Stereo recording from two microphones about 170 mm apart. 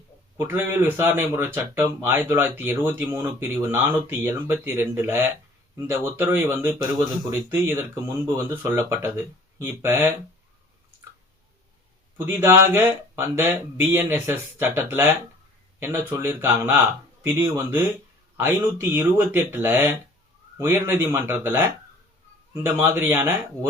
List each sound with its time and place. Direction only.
0.3 s speech: 15° right (ahead or behind)
12.1 s speech: 15° right (ahead or behind)